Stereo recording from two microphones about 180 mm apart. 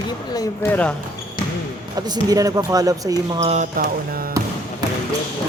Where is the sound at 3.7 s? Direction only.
55° right (ahead or behind).